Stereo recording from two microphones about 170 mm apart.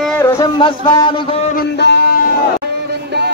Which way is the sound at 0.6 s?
30° left (ahead or behind).